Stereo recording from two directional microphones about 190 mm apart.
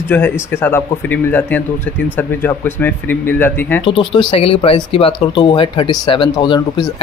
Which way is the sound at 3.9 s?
25° left (ahead or behind).